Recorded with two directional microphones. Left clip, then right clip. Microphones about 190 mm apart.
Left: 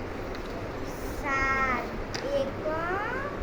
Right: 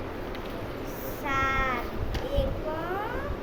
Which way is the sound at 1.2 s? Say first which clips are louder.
Even; 5° right (ahead or behind).